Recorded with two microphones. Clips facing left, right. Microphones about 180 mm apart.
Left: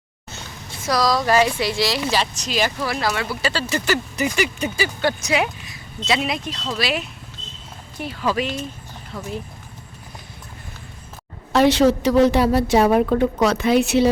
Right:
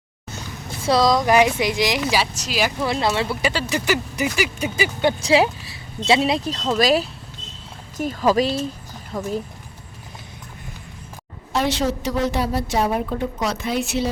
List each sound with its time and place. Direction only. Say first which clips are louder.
0.9 s speech: right 2 dB; 25° right (ahead or behind); by 2.7 s 10° right (ahead or behind)
2.8 s speech: right 2 dB; 25° right (ahead or behind); by 4.7 s 5° right (ahead or behind)
4.8 s speech: right 2 dB; 20° right (ahead or behind)
5.2 s speech: right 5 dB; 30° right (ahead or behind)
11.5 s a woman's voice: left 7 dB; 65° left (ahead or behind)